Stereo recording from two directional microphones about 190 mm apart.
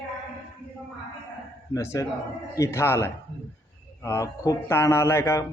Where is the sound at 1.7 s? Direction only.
15° left (ahead or behind).